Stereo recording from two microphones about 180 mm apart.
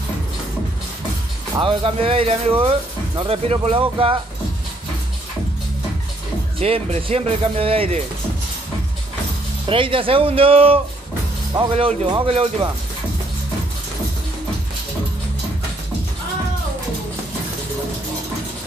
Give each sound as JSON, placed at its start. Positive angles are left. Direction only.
{"t": 1.6, "sound": "speech", "side_deg": -30}
{"t": 6.6, "sound": "speech", "side_deg": -35}
{"t": 9.7, "sound": "speech", "side_deg": -30}